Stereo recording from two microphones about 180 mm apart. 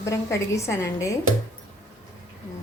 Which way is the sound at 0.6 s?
15° left (ahead or behind).